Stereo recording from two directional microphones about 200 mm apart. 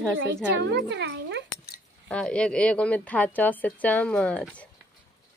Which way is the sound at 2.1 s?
5° left (ahead or behind).